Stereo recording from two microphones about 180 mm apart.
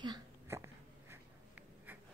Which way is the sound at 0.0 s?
20° right (ahead or behind).